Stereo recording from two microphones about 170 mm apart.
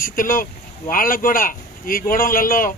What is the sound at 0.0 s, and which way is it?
Speech, 55° left (ahead or behind).